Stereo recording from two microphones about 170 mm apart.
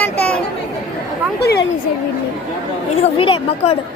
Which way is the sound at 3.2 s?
30° left (ahead or behind).